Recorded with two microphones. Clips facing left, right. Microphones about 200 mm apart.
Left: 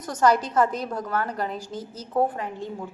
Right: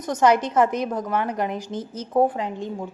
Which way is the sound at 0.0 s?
20° right (ahead or behind).